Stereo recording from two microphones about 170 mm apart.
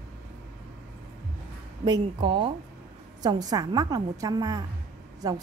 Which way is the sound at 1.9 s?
30° right (ahead or behind).